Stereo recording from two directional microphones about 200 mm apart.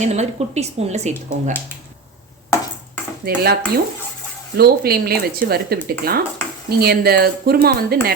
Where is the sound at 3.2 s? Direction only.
50° right (ahead or behind).